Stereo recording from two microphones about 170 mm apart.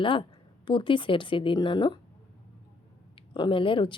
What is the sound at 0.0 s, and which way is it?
A woman's voice, 30° left (ahead or behind).